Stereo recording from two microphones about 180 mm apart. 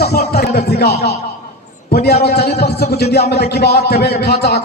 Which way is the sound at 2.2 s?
65° left (ahead or behind).